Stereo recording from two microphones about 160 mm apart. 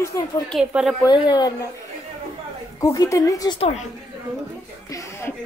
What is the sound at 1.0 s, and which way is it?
Speech, 25° left (ahead or behind).